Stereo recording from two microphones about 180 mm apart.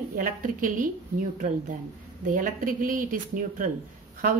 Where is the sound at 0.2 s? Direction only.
50° right (ahead or behind).